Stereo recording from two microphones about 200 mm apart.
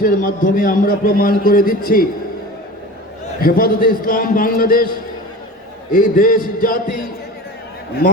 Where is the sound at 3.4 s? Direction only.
45° left (ahead or behind).